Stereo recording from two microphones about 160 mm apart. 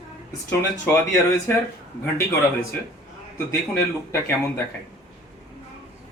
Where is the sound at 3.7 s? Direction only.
15° left (ahead or behind).